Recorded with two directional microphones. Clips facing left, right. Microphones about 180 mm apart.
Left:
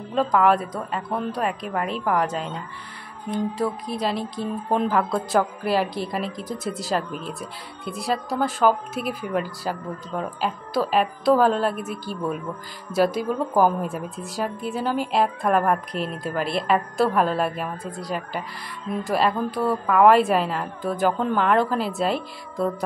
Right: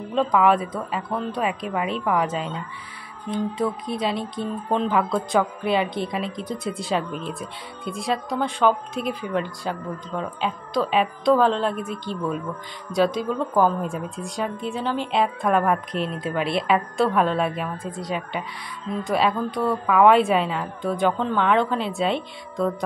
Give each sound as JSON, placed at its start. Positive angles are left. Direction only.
{"t": 0.1, "sound": "a woman's voice", "side_deg": 0}